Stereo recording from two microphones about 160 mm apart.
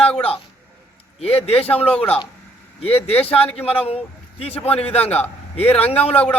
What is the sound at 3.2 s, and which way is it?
Speech, 40° left (ahead or behind).